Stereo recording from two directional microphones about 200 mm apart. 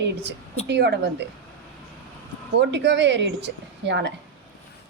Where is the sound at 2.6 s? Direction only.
60° right (ahead or behind).